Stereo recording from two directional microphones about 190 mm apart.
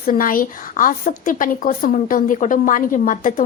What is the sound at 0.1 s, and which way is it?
Speech, 45° left (ahead or behind).